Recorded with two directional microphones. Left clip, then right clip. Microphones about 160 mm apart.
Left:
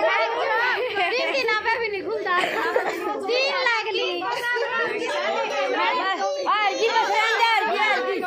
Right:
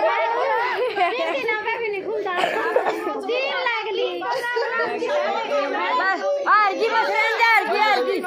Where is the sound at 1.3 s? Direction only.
35° left (ahead or behind).